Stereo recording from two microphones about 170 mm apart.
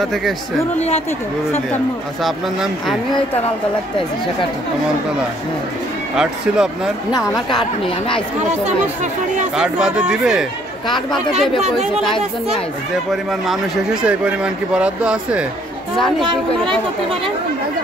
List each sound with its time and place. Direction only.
0.0 s speech: centre (ahead or behind)
2.2 s speech: centre (ahead or behind)
6.1 s speech: 5° right (ahead or behind)
9.6 s speech: 5° right (ahead or behind)
14.0 s speech: 5° right (ahead or behind)
16.3 s speech: 30° right (ahead or behind)